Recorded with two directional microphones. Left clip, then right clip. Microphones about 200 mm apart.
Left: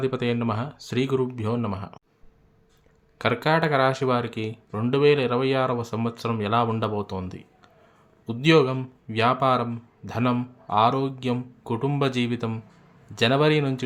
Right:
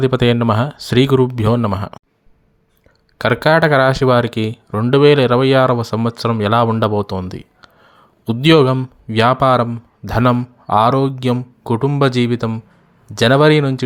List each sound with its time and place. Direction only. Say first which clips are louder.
0.0 s speech: right 11 dB; 40° right (ahead or behind)
3.2 s a man's voice: right 10 dB; 35° right (ahead or behind)